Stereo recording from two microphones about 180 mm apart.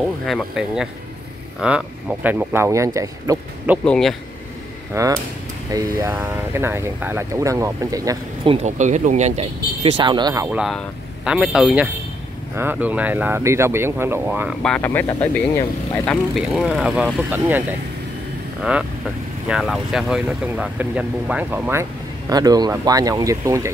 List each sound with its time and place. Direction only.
0.3 s speech: centre (ahead or behind); by 3.7 s 15° right (ahead or behind)
3.8 s speech: 5° left (ahead or behind)
4.9 s speech: 15° right (ahead or behind)
8.6 s speech: 40° right (ahead or behind); by 10.6 s 15° right (ahead or behind)
11.2 s speech: 5° right (ahead or behind)
14.6 s speech: 5° left (ahead or behind)
16.1 s speech: centre (ahead or behind); by 23.7 s 15° right (ahead or behind)